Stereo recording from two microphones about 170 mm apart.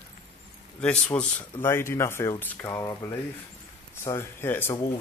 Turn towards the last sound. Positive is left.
turn(degrees=15)  # may be behind; listen again after turning